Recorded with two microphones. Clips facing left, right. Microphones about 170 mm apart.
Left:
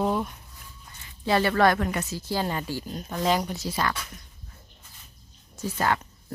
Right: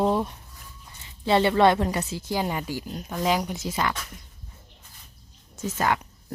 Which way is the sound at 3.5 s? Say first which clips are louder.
Right 1 dB; 20° right (ahead or behind).